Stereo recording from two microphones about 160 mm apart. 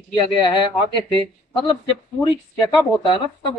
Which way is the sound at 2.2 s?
25° left (ahead or behind).